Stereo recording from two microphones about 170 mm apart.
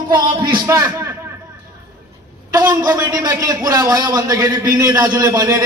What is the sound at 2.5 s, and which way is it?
A man's voice, 20° right (ahead or behind).